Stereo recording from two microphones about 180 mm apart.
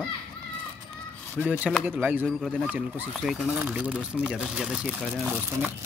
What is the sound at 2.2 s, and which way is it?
Speech, 5° left (ahead or behind).